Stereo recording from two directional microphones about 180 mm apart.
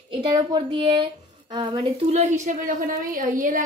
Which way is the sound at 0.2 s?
25° right (ahead or behind).